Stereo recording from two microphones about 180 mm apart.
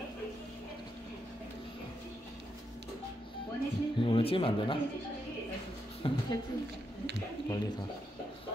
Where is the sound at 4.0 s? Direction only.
30° left (ahead or behind).